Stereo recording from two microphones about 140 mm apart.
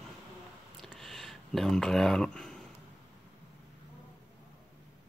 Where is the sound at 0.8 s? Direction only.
Centre (ahead or behind).